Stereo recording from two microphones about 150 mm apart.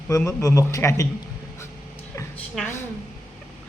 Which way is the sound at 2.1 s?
20° left (ahead or behind).